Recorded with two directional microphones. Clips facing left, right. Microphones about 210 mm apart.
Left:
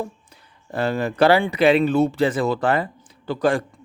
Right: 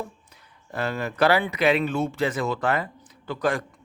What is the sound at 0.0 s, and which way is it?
Speech, 30° left (ahead or behind).